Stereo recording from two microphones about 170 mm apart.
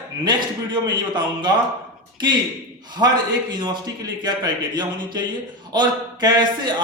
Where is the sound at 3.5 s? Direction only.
25° right (ahead or behind).